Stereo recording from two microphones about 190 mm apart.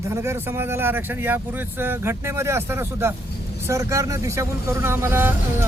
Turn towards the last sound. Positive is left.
turn(degrees=-10)  # may be behind; listen again after turning